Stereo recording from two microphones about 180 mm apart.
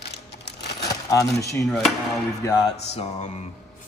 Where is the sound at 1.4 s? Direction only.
15° left (ahead or behind).